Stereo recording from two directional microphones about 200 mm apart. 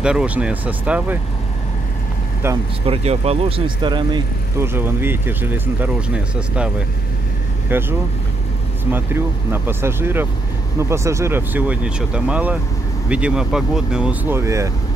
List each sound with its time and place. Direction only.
0.0 s speech: 5° right (ahead or behind)
2.4 s speech: 10° right (ahead or behind)
2.9 s speech: 30° right (ahead or behind)
4.7 s speech: 10° right (ahead or behind)
7.7 s speech: 10° right (ahead or behind)
8.9 s speech: 10° right (ahead or behind)